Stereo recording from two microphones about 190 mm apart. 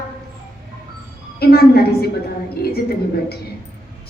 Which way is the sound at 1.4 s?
55° left (ahead or behind).